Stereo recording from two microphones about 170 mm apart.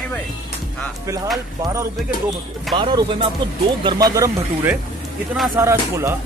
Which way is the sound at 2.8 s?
30° right (ahead or behind).